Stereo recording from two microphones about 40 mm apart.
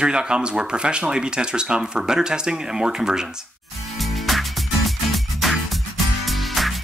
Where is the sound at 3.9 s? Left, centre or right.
Centre.